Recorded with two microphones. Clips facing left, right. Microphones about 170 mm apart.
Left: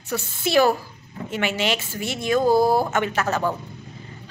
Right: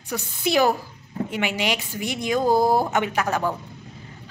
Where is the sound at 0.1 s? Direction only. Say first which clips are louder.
Left 2 dB; 15° right (ahead or behind).